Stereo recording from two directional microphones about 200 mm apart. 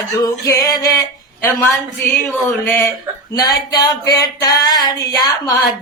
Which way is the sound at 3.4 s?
20° left (ahead or behind).